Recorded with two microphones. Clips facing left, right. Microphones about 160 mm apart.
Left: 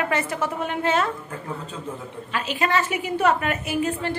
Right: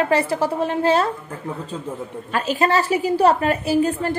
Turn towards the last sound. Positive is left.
turn(degrees=-35)  # may be behind; listen again after turning